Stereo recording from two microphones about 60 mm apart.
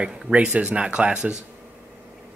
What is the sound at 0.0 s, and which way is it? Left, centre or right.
Speech, centre.